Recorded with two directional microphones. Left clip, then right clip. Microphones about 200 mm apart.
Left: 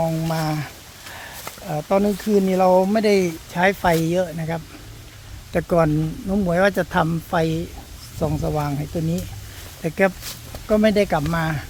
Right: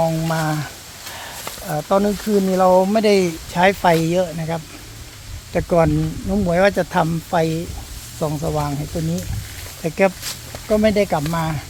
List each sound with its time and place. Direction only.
0.0 s speech: 5° left (ahead or behind)
1.1 s a sound: centre (ahead or behind)
2.0 s speech: 15° left (ahead or behind)
9.8 s speech: 15° left (ahead or behind)
10.7 s speech: 25° left (ahead or behind)